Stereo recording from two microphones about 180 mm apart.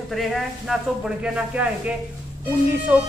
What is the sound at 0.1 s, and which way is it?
A woman's voice, centre (ahead or behind).